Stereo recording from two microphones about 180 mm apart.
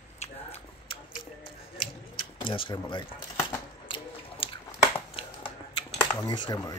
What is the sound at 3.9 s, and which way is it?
Scissors, 30° left (ahead or behind).